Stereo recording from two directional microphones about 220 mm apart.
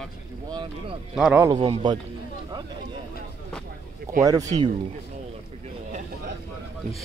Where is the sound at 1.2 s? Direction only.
5° right (ahead or behind).